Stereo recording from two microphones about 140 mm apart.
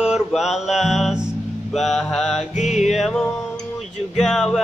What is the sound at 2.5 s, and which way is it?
Music, 55° left (ahead or behind).